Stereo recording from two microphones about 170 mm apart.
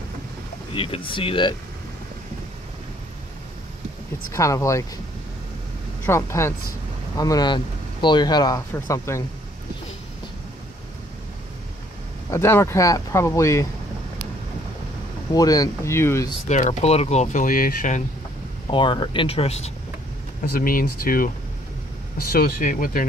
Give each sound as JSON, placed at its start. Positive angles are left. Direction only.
{"t": 0.7, "sound": "speech", "side_deg": 30}
{"t": 4.3, "sound": "speech", "side_deg": 20}
{"t": 6.0, "sound": "speech", "side_deg": 15}
{"t": 12.3, "sound": "speech", "side_deg": 15}
{"t": 15.3, "sound": "speech", "side_deg": 20}
{"t": 16.4, "sound": "speech", "side_deg": 45}
{"t": 18.7, "sound": "speech", "side_deg": 30}
{"t": 20.5, "sound": "speech", "side_deg": 60}